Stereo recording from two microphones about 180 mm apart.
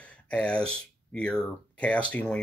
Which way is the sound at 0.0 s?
5° left (ahead or behind).